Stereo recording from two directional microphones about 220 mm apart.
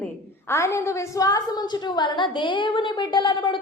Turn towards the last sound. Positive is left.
turn(degrees=20)  # may be behind; listen again after turning